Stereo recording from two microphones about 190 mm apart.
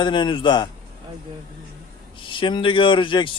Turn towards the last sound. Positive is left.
turn(degrees=25)  # may be behind; listen again after turning